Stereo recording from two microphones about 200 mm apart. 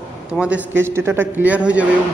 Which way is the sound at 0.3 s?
5° right (ahead or behind).